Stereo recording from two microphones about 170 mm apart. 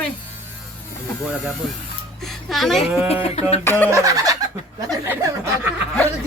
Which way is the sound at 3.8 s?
20° right (ahead or behind).